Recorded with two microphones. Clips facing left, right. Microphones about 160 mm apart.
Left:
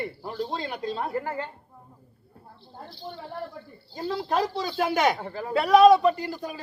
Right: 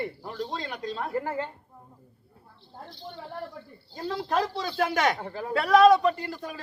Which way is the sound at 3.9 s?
5° left (ahead or behind).